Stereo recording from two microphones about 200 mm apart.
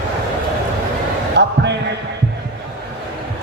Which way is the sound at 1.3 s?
60° right (ahead or behind).